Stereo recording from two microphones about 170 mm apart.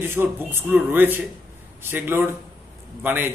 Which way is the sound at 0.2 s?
15° right (ahead or behind).